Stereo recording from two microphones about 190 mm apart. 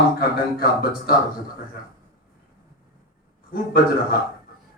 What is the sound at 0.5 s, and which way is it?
Speech, 50° left (ahead or behind).